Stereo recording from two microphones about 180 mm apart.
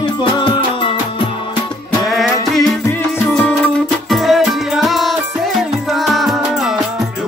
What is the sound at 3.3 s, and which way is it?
Music, 5° left (ahead or behind).